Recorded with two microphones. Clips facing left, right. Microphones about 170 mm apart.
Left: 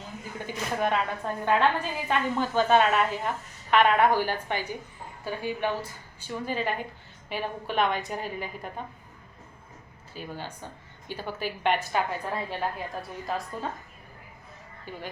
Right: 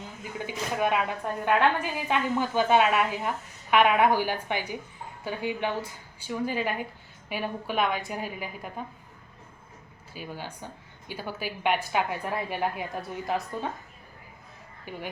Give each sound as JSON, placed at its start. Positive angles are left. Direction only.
{"t": 0.4, "sound": "a woman's voice", "side_deg": -10}
{"t": 10.2, "sound": "a woman's voice", "side_deg": -10}
{"t": 14.9, "sound": "a woman's voice", "side_deg": -15}